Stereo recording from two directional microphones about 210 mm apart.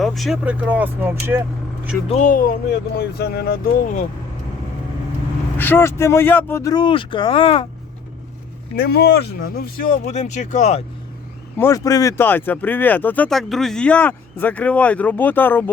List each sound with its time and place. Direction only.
0.0 s speech: centre (ahead or behind)
2.0 s speech: 35° left (ahead or behind)
5.5 s speech: 10° left (ahead or behind)
8.7 s speech: 45° left (ahead or behind)
11.5 s speech: 15° left (ahead or behind)